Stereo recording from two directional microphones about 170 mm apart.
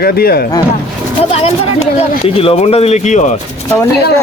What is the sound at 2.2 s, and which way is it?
Speech, 35° left (ahead or behind).